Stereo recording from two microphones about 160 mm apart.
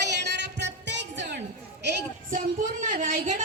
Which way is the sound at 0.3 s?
90° right.